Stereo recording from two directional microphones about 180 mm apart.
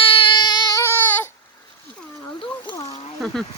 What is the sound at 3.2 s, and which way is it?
Speech, 5° left (ahead or behind).